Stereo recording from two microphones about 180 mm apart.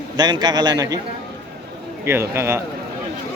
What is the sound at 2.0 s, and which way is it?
Speech, 15° right (ahead or behind).